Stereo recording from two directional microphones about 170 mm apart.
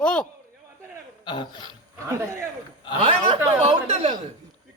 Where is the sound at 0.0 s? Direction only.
5° left (ahead or behind).